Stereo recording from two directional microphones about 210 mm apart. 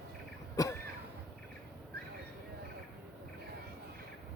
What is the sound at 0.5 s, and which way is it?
Cough, 15° left (ahead or behind).